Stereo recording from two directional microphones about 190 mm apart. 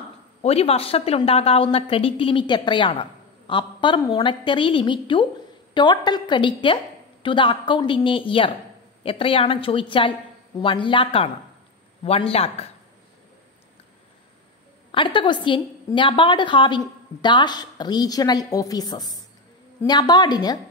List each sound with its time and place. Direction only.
0.4 s a man's voice: 35° left (ahead or behind)
14.9 s speech: 25° left (ahead or behind)